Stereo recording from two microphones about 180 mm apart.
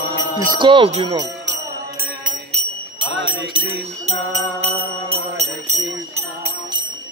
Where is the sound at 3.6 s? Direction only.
30° right (ahead or behind).